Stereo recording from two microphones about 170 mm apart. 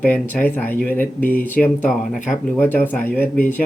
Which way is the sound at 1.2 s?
55° left (ahead or behind).